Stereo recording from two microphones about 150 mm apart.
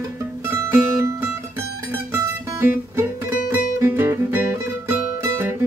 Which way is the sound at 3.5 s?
15° right (ahead or behind).